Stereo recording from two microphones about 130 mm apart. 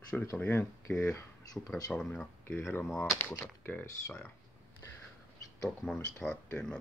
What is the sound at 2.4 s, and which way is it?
Speech, 15° left (ahead or behind).